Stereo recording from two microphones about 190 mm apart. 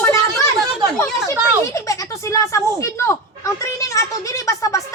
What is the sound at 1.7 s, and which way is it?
Speech, 15° left (ahead or behind).